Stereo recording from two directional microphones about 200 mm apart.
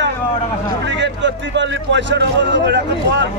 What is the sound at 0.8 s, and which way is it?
A man's voice, 60° right (ahead or behind).